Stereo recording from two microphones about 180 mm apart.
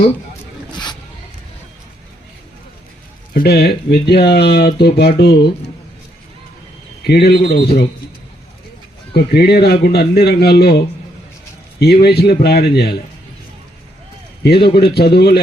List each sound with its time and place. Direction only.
3.3 s speech: 60° left (ahead or behind)
7.1 s speech: 60° left (ahead or behind)
9.1 s speech: 60° left (ahead or behind)
14.4 s speech: 65° left (ahead or behind)